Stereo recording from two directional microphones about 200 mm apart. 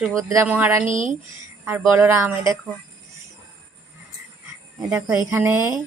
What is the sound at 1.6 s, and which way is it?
Speech, 10° right (ahead or behind).